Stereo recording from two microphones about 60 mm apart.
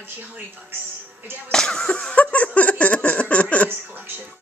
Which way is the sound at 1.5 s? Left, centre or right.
Centre.